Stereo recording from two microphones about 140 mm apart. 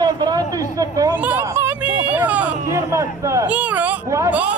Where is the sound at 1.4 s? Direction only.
15° right (ahead or behind).